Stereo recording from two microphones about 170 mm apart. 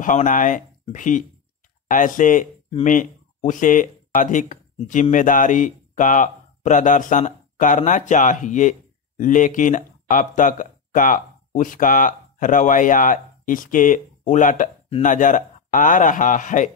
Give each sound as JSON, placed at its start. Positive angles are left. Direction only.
{"t": 0.0, "sound": "a man's voice", "side_deg": 50}